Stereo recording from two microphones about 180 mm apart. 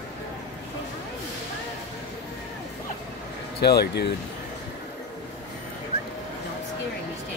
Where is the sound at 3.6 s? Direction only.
65° left (ahead or behind).